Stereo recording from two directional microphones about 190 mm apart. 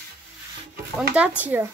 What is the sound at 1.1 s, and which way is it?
Speech, 10° right (ahead or behind).